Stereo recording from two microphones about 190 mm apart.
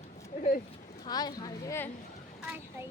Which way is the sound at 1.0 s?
20° left (ahead or behind).